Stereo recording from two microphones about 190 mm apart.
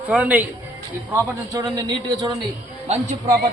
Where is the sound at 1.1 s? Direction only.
20° right (ahead or behind).